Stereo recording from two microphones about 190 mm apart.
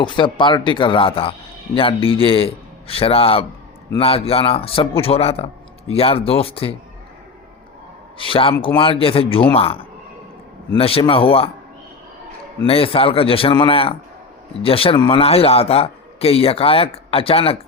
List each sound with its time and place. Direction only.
0.0 s a man's voice: 25° left (ahead or behind)
8.2 s a man's voice: 30° left (ahead or behind)
12.6 s a man's voice: 30° left (ahead or behind)